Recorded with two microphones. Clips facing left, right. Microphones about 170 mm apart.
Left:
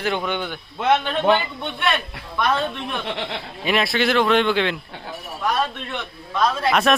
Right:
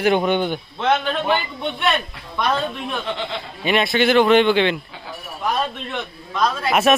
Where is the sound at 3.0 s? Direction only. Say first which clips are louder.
Right 1 dB; 65° left (ahead or behind).